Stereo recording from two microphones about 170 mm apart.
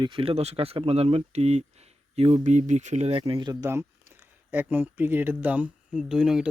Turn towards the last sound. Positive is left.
turn(degrees=-5)  # may be behind; listen again after turning